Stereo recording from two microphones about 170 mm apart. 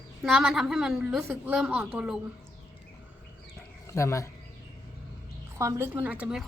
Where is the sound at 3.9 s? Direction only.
15° left (ahead or behind).